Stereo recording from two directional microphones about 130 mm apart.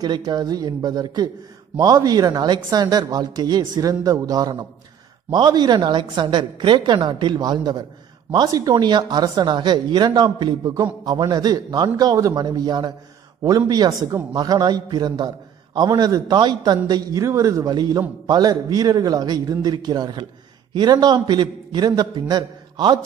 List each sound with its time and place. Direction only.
0.0 s a man's voice: 30° right (ahead or behind)